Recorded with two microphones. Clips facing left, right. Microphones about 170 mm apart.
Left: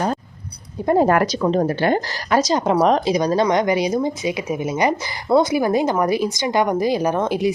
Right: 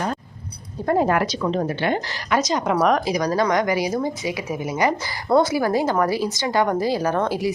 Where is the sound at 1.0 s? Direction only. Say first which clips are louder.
Left 4 dB; 45° left (ahead or behind).